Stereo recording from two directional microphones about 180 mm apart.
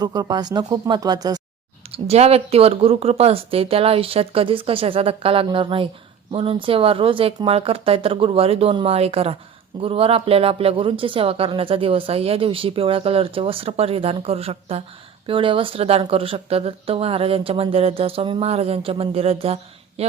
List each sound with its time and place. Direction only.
0.0 s speech: 20° right (ahead or behind)
1.9 s speech: 35° right (ahead or behind)